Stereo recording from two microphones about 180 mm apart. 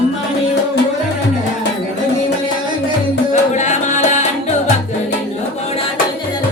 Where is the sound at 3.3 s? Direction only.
40° left (ahead or behind).